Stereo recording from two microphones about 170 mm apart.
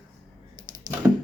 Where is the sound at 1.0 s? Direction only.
10° right (ahead or behind).